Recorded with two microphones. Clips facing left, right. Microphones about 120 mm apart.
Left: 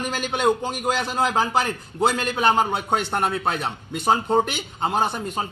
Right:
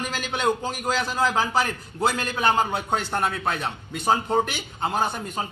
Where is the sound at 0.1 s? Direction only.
20° left (ahead or behind).